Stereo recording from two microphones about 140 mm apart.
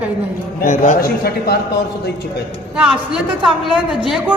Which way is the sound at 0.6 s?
70° left (ahead or behind).